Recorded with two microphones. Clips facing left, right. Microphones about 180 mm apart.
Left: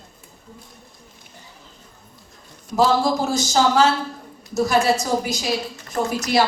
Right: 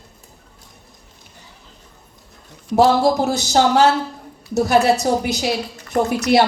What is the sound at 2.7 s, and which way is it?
A woman's voice, 65° right (ahead or behind).